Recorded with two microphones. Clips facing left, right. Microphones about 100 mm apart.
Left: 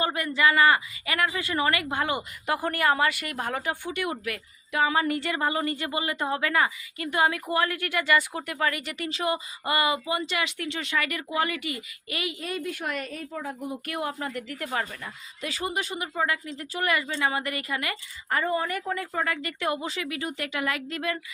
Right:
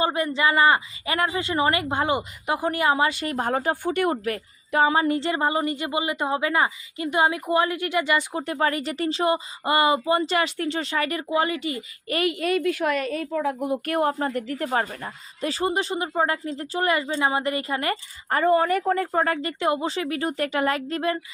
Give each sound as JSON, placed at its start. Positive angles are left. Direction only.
{"t": 0.0, "sound": "speech", "side_deg": -25}
{"t": 12.0, "sound": "a woman's voice", "side_deg": -50}
{"t": 13.8, "sound": "a woman's voice", "side_deg": -45}
{"t": 17.7, "sound": "a woman's voice", "side_deg": -40}